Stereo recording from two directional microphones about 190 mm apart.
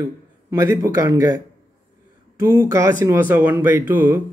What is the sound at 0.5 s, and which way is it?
Speech, 15° right (ahead or behind).